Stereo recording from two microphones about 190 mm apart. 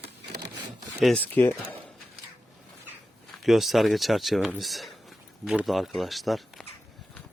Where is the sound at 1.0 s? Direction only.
5° left (ahead or behind).